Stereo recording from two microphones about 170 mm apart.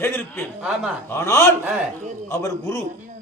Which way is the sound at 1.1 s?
15° left (ahead or behind).